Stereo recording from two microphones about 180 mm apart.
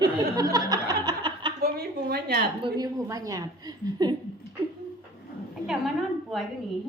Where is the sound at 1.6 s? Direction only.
60° right (ahead or behind).